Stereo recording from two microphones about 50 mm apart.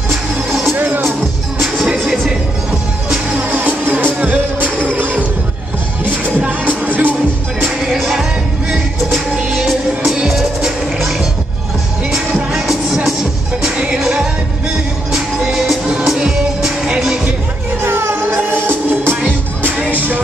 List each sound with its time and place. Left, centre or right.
0.1 s music: centre
0.7 s music: right
3.5 s music: right
6.6 s music: right
7.9 s music: centre
10.1 s music: centre
12.1 s music: centre
17.8 s music: right
18.3 s music: right